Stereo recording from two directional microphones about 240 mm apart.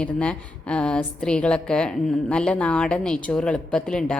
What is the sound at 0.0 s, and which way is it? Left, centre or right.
A woman's voice, centre.